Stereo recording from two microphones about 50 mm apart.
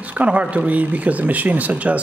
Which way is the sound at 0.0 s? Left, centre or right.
Right.